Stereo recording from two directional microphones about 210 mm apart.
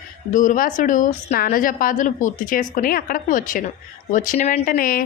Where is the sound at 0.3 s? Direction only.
40° left (ahead or behind).